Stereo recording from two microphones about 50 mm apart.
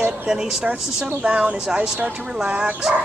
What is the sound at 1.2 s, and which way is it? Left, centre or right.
Speech, right.